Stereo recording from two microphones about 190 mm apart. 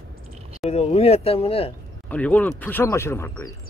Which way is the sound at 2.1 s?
10° left (ahead or behind).